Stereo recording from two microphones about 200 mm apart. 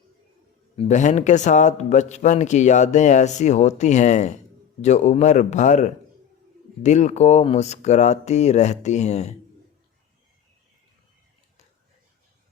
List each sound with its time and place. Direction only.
0.8 s a man's voice: 35° left (ahead or behind)